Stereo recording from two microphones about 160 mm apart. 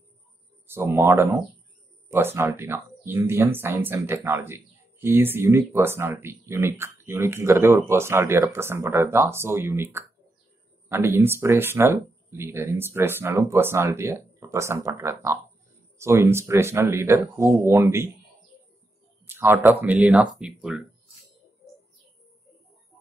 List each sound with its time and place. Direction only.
0.7 s speech: 15° right (ahead or behind)
19.2 s speech: 15° right (ahead or behind)